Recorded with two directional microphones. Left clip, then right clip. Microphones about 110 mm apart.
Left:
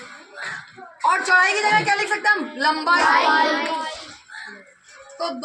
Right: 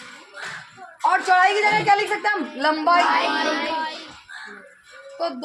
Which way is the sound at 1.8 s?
5° right (ahead or behind).